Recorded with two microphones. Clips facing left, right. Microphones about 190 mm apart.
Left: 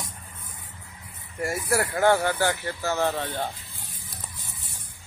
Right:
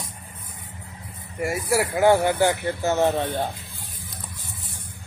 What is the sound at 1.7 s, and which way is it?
Speech, 10° right (ahead or behind).